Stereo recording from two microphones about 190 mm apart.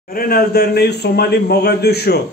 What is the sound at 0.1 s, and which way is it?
A man's voice, 50° left (ahead or behind).